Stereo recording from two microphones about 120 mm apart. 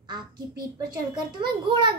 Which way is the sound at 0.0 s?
35° right (ahead or behind).